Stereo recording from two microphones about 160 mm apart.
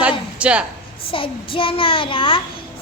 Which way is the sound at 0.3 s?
5° right (ahead or behind).